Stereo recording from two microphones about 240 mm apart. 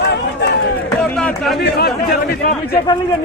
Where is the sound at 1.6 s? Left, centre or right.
Left.